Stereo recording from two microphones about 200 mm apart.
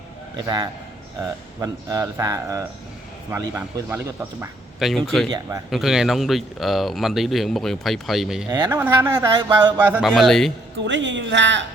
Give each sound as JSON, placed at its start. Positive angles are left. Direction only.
{"t": 0.3, "sound": "a man's voice", "side_deg": -20}
{"t": 5.3, "sound": "a man's voice", "side_deg": -15}
{"t": 5.7, "sound": "a man's voice", "side_deg": 0}
{"t": 10.8, "sound": "speech", "side_deg": -65}